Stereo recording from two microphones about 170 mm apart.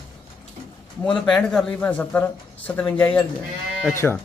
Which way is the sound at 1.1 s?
5° left (ahead or behind).